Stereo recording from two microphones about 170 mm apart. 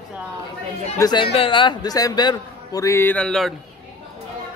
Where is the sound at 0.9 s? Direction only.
25° left (ahead or behind); by 3.5 s 5° left (ahead or behind).